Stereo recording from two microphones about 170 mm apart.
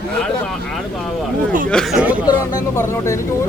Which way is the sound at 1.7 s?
Centre (ahead or behind).